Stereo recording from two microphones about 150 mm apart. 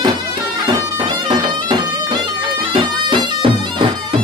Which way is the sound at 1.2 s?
30° right (ahead or behind).